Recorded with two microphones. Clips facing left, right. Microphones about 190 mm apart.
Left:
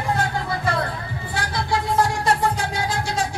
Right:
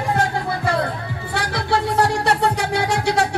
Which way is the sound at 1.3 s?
65° right (ahead or behind).